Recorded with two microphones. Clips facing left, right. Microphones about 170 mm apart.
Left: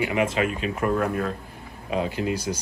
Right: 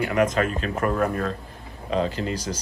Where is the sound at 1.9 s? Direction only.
10° left (ahead or behind).